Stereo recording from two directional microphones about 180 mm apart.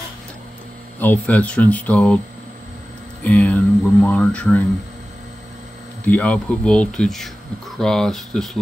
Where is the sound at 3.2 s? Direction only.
5° left (ahead or behind).